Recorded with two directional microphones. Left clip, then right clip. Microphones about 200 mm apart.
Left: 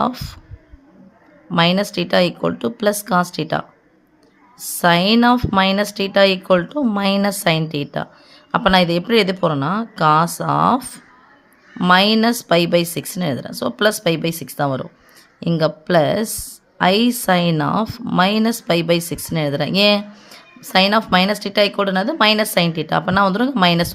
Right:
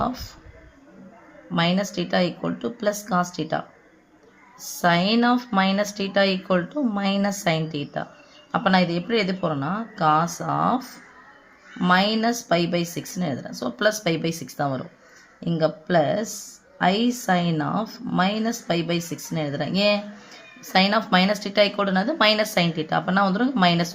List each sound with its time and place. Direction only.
0.0 s speech: 40° left (ahead or behind)
1.5 s speech: 35° left (ahead or behind)
4.8 s speech: 30° left (ahead or behind)